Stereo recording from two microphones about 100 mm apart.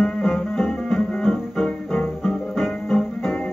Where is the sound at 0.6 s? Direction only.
15° left (ahead or behind).